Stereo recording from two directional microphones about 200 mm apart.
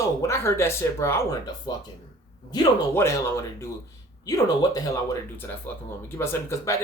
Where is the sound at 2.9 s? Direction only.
15° left (ahead or behind).